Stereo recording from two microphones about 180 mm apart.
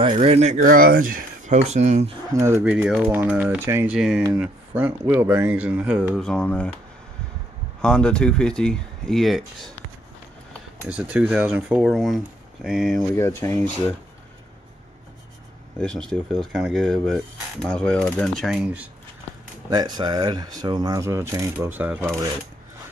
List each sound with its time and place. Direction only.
0.0 s speech: 35° right (ahead or behind)
0.6 s speech: 50° right (ahead or behind)
2.3 s speech: 15° right (ahead or behind)
2.7 s speech: centre (ahead or behind)
7.8 s speech: 5° left (ahead or behind)
10.9 s speech: 5° right (ahead or behind)
13.1 s speech: 15° left (ahead or behind)
15.8 s speech: 5° left (ahead or behind)
19.7 s speech: 20° right (ahead or behind)